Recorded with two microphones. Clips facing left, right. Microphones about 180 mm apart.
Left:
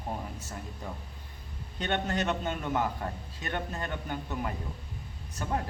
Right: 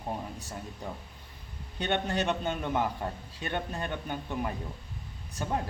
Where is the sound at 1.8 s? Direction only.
15° right (ahead or behind).